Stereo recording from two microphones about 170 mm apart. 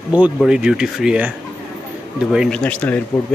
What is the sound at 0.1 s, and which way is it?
Speech, 5° right (ahead or behind).